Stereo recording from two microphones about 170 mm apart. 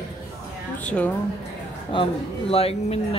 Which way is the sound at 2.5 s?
35° left (ahead or behind).